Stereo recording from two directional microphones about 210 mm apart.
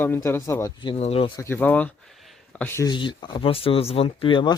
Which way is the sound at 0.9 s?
30° left (ahead or behind).